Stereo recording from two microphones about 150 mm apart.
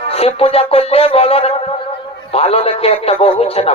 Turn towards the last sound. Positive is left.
turn(degrees=45)  # may be behind; listen again after turning